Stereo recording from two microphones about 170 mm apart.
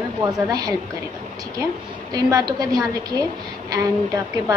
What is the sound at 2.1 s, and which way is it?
A woman's voice, 25° right (ahead or behind).